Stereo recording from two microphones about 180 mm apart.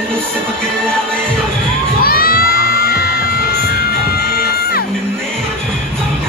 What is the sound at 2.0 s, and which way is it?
Music, 55° left (ahead or behind).